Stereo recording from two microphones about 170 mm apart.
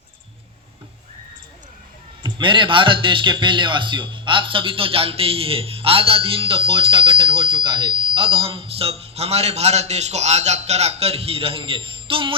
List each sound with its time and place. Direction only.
2.2 s a man's voice: 30° right (ahead or behind)